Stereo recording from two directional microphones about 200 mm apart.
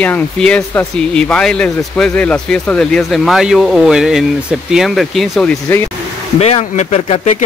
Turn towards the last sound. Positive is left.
turn(degrees=30)  # may be behind; listen again after turning